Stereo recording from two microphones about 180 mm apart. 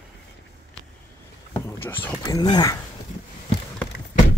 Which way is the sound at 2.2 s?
20° left (ahead or behind).